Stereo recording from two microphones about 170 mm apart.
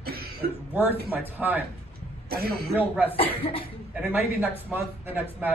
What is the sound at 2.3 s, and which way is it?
Speech, 65° right (ahead or behind).